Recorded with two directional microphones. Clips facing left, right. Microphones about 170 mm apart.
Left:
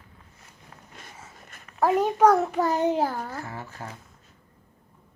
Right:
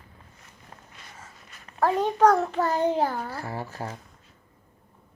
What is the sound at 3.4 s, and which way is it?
Speech, 35° right (ahead or behind).